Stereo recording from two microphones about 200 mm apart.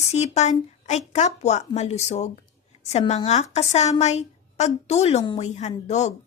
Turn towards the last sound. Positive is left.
turn(degrees=35)  # may be behind; listen again after turning